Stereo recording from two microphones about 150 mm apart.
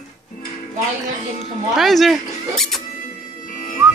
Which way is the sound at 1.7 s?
Centre (ahead or behind).